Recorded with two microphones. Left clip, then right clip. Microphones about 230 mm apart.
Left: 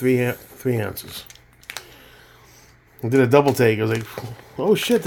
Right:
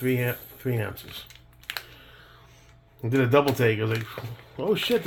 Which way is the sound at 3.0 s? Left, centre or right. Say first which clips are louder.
Left 6 dB; left.